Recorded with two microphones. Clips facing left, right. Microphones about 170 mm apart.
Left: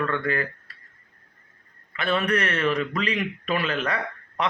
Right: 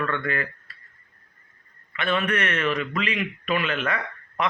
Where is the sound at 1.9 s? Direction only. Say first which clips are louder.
Left 1 dB; 35° left (ahead or behind).